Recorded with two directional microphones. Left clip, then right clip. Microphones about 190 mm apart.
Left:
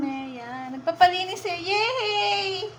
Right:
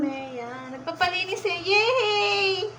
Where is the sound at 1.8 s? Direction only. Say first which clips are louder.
Right 2 dB; 15° left (ahead or behind).